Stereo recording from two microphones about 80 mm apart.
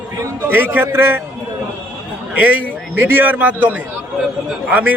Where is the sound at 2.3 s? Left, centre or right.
Centre.